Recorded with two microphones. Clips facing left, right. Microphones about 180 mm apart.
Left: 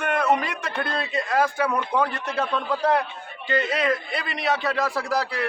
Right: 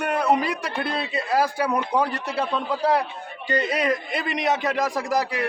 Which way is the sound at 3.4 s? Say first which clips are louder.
Even; 40° right (ahead or behind).